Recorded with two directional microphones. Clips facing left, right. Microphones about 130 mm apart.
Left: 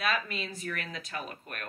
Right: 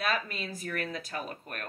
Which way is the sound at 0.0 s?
40° right (ahead or behind).